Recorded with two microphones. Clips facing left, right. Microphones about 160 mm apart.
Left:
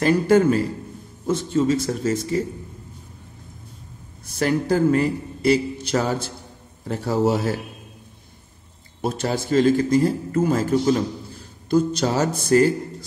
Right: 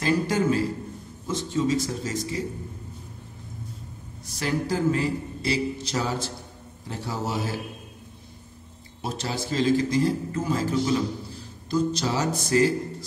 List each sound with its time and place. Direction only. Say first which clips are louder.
0.0 s a man's voice: left 7 dB; 60° left (ahead or behind)
4.3 s a man's voice: left 6 dB; 55° left (ahead or behind)
9.0 s a man's voice: left 6 dB; 55° left (ahead or behind)